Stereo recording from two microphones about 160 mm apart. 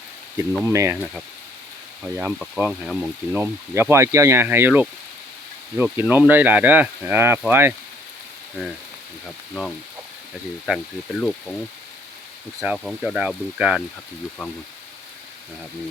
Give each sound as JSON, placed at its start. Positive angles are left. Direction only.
{"t": 0.7, "sound": "speech", "side_deg": -20}
{"t": 2.0, "sound": "speech", "side_deg": -10}
{"t": 3.3, "sound": "speech", "side_deg": -15}
{"t": 10.7, "sound": "speech", "side_deg": 5}
{"t": 12.5, "sound": "speech", "side_deg": -5}